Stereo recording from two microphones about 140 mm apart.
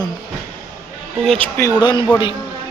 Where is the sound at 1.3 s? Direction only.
15° left (ahead or behind).